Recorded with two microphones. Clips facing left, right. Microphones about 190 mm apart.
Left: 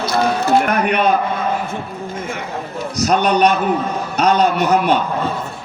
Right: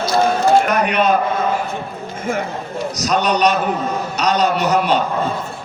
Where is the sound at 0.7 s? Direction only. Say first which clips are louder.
Even; 55° left (ahead or behind).